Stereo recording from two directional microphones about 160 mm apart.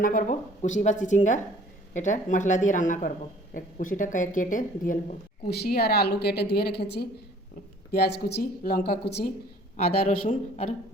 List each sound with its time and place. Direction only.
0.0 s speech: 55° left (ahead or behind)
5.5 s a woman's voice: 80° left
9.7 s speech: 45° left (ahead or behind)